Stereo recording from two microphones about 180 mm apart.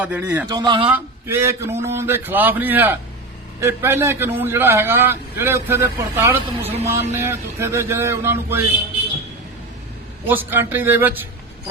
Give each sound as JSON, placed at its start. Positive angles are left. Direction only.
{"t": 0.0, "sound": "a man's voice", "side_deg": -10}
{"t": 0.5, "sound": "a man's voice", "side_deg": -25}
{"t": 0.9, "sound": "a man's voice", "side_deg": -15}
{"t": 10.2, "sound": "a man's voice", "side_deg": -10}